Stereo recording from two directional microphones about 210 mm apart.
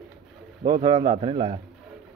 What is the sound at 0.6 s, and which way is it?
Speech, 20° right (ahead or behind).